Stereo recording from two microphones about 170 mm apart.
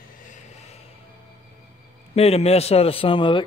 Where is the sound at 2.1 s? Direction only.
35° left (ahead or behind).